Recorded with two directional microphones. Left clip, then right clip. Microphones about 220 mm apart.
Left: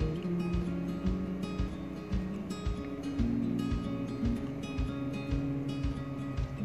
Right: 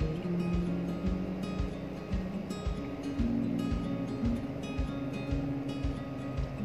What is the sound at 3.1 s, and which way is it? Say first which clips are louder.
Music: even; centre (ahead or behind).